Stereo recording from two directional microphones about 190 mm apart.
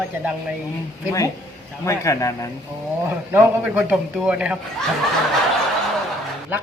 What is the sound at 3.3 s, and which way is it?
A man's voice, 5° right (ahead or behind).